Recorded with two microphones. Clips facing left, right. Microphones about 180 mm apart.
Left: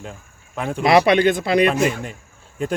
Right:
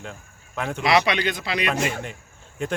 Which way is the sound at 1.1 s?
50° left (ahead or behind).